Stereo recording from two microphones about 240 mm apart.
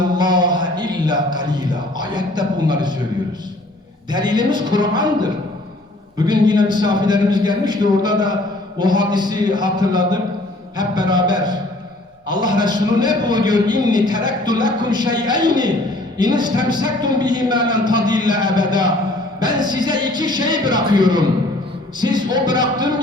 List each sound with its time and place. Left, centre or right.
0.0 s speech: centre
4.1 s a man's voice: centre